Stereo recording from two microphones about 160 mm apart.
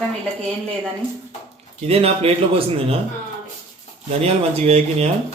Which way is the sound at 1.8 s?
40° right (ahead or behind).